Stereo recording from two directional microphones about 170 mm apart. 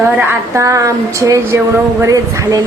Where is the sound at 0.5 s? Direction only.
20° right (ahead or behind).